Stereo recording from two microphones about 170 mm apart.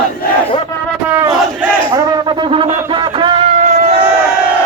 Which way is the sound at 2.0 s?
25° right (ahead or behind).